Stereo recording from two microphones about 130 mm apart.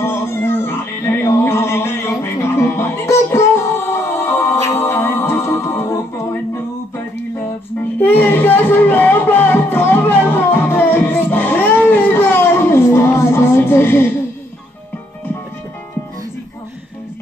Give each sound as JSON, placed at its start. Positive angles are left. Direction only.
{"t": 0.0, "sound": "music", "side_deg": 20}
{"t": 8.0, "sound": "music", "side_deg": 15}